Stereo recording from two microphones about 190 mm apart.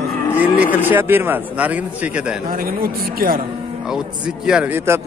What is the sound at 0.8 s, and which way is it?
A man's voice, 10° right (ahead or behind).